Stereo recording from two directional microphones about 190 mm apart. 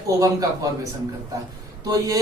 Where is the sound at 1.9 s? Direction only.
20° right (ahead or behind).